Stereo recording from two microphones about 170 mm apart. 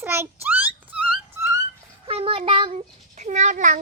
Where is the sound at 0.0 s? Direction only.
15° right (ahead or behind).